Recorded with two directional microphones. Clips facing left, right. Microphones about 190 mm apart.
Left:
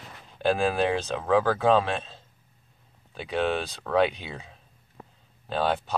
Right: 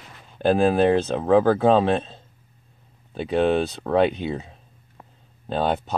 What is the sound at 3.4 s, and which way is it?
Speech, 45° right (ahead or behind).